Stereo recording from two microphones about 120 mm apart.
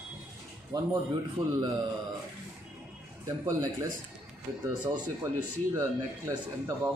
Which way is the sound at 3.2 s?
25° right (ahead or behind).